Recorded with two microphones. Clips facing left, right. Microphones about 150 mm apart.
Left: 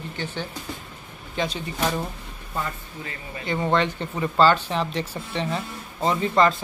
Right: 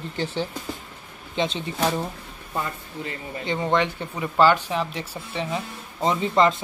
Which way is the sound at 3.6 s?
15° right (ahead or behind).